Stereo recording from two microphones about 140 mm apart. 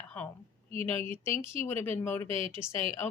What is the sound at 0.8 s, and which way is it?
Speech, 15° left (ahead or behind).